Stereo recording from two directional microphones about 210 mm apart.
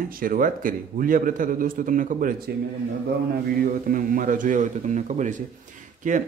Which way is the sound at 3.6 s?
40° right (ahead or behind).